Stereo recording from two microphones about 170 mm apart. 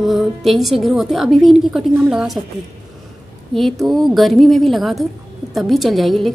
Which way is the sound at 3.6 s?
Centre (ahead or behind).